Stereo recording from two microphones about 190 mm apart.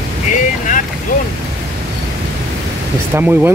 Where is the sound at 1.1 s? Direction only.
45° left (ahead or behind).